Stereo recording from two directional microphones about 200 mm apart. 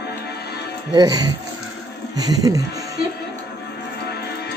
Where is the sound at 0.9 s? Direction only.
20° right (ahead or behind).